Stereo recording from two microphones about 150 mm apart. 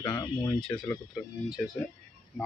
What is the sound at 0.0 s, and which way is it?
Speech, 20° left (ahead or behind).